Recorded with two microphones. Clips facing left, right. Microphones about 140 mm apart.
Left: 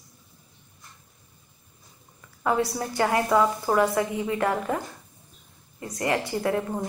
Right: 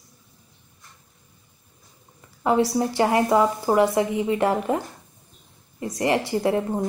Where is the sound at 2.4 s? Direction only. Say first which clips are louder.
Right 5 dB; 25° right (ahead or behind).